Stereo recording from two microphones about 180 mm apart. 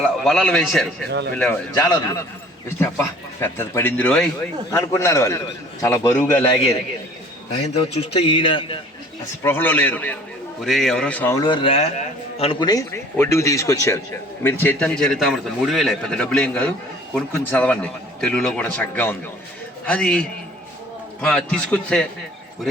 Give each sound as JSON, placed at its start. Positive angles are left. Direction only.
{"t": 0.0, "sound": "a man's voice", "side_deg": 0}
{"t": 1.7, "sound": "a man's voice", "side_deg": 20}
{"t": 6.5, "sound": "a man's voice", "side_deg": 30}
{"t": 9.4, "sound": "a man's voice", "side_deg": 10}
{"t": 11.3, "sound": "a man's voice", "side_deg": 25}